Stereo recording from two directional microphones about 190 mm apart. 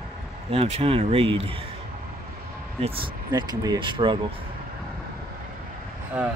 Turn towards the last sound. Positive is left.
turn(degrees=-5)  # may be behind; listen again after turning